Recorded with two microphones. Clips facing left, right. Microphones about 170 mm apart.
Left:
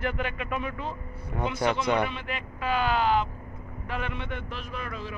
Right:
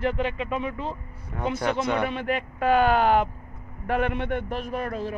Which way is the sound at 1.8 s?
Centre (ahead or behind).